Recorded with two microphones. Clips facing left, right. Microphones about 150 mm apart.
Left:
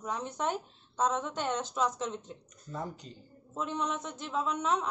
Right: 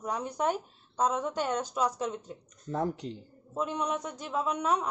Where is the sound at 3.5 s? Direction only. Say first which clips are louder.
Right 3 dB; 10° right (ahead or behind).